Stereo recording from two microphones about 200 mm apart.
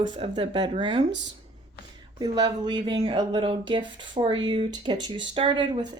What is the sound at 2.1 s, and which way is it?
A woman's voice, 20° right (ahead or behind).